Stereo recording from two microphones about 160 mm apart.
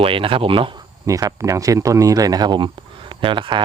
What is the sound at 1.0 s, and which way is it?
Speech, 20° right (ahead or behind).